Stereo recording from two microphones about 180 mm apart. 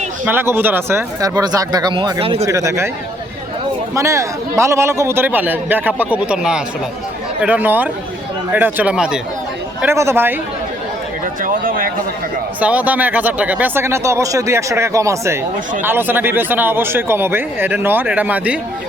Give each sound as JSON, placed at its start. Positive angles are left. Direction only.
{"t": 0.3, "sound": "speech", "side_deg": -10}
{"t": 2.5, "sound": "speech", "side_deg": -15}
{"t": 3.9, "sound": "speech", "side_deg": -15}
{"t": 11.4, "sound": "speech", "side_deg": -50}
{"t": 12.5, "sound": "speech", "side_deg": -10}